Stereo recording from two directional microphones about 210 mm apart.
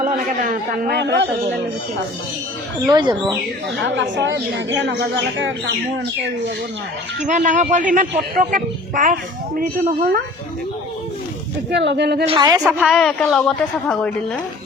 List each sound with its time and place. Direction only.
0.0 s a man's voice: 40° right (ahead or behind); by 1.3 s 55° right (ahead or behind)
2.8 s speech: 20° right (ahead or behind)
3.8 s speech: 60° right (ahead or behind)
7.3 s a man's voice: 35° right (ahead or behind)
11.7 s a man's voice: 55° right (ahead or behind)
12.2 s speech: 25° right (ahead or behind)
12.7 s a woman's voice: centre (ahead or behind)